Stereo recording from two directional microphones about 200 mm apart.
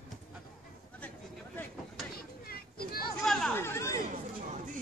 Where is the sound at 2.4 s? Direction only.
50° left (ahead or behind).